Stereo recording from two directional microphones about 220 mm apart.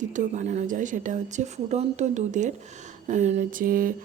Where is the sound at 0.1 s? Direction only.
35° right (ahead or behind).